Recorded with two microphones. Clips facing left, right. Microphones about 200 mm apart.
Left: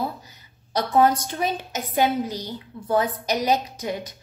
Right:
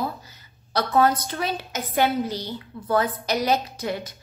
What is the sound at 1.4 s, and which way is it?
A woman's voice, 15° left (ahead or behind).